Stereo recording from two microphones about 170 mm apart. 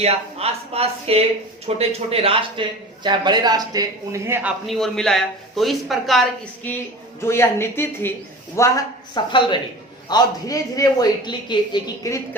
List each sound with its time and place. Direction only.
0.0 s speech: 35° right (ahead or behind); by 4.5 s 15° right (ahead or behind)
4.6 s speech: centre (ahead or behind)
7.2 s speech: 15° left (ahead or behind)